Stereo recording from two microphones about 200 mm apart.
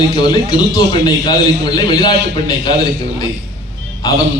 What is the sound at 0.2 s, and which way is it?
A man's voice, 20° left (ahead or behind).